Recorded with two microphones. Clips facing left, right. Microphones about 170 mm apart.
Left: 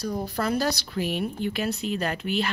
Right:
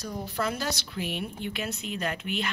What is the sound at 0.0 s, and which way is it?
A woman's voice, 40° left (ahead or behind).